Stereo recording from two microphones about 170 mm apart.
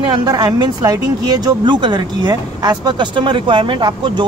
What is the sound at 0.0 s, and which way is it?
Speech, 25° right (ahead or behind).